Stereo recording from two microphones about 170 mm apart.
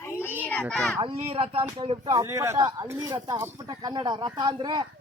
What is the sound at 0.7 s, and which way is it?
Speech, 5° left (ahead or behind).